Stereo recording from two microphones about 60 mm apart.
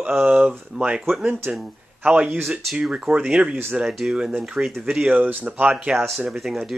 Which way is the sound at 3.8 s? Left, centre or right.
Centre.